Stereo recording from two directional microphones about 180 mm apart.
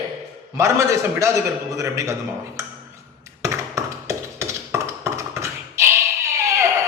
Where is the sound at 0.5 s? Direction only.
15° right (ahead or behind).